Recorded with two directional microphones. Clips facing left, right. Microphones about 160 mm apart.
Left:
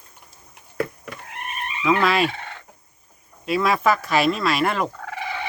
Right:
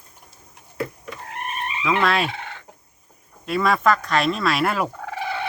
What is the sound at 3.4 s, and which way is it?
Speech, centre (ahead or behind).